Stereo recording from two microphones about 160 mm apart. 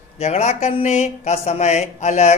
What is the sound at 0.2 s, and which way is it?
Speech, 45° left (ahead or behind).